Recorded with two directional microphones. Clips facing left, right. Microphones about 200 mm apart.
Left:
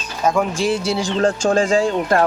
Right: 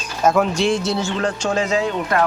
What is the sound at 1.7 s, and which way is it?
Speech, 30° left (ahead or behind).